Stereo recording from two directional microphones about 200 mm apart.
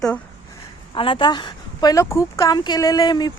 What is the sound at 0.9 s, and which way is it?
A woman's voice, 25° left (ahead or behind).